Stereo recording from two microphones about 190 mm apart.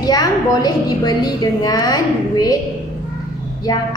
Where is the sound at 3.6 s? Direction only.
20° left (ahead or behind).